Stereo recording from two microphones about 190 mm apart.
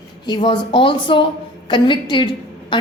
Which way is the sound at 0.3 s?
25° left (ahead or behind).